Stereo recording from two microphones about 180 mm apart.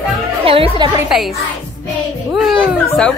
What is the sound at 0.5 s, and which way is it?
Speech, 30° right (ahead or behind).